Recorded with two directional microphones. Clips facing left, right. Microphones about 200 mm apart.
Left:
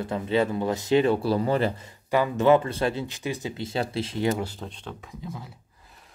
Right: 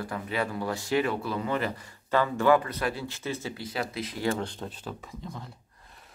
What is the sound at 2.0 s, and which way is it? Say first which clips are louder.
Speech: left 3 dB; 15° left (ahead or behind).